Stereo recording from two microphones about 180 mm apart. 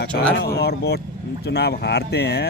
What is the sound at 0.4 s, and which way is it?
Speech, 65° left (ahead or behind).